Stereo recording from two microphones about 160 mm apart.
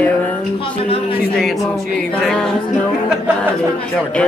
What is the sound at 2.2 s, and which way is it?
Speech, centre (ahead or behind).